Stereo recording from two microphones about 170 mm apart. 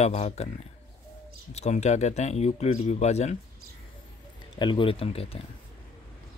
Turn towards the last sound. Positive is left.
turn(degrees=35)  # may be behind; listen again after turning